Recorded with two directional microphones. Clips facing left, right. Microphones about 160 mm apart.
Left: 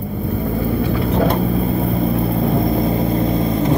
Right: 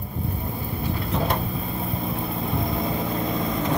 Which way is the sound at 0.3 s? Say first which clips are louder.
Left 15 dB; 80° left.